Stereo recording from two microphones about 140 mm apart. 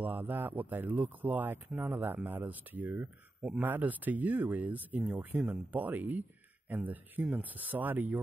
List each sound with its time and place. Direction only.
0.0 s speech: 15° right (ahead or behind)